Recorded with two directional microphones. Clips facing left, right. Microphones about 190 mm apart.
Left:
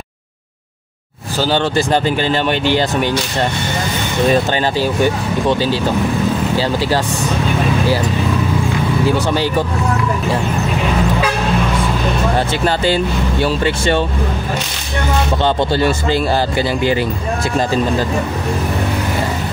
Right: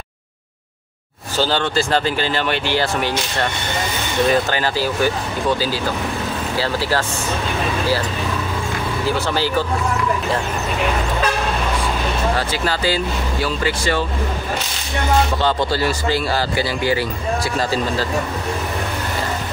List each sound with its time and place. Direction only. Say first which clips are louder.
1.8 s speech: left 3 dB; 20° left (ahead or behind)
12.4 s speech: left 5 dB; 25° left (ahead or behind)
15.4 s speech: left 4 dB; 20° left (ahead or behind)